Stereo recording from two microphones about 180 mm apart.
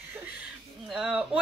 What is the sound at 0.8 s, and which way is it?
Speech, 5° right (ahead or behind).